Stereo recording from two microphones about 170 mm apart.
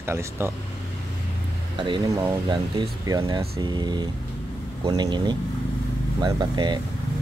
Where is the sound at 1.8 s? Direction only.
25° right (ahead or behind).